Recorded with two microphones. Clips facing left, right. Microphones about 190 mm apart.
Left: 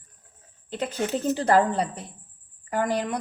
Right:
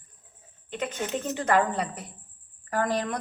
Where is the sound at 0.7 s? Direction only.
35° left (ahead or behind).